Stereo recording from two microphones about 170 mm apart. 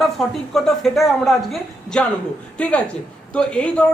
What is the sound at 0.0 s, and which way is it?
A man's voice, centre (ahead or behind).